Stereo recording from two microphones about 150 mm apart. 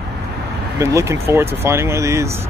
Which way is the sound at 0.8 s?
20° right (ahead or behind).